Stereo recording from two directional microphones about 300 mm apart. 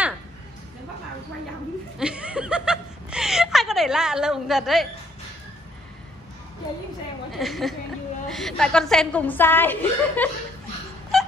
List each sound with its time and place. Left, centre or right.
2.0 s chuckle: centre
7.3 s a woman's voice: centre
11.1 s a sound: centre